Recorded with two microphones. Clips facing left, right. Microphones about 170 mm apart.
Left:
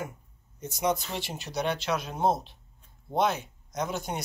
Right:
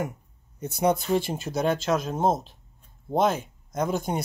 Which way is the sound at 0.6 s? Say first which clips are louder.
Right 5 dB; 60° right (ahead or behind).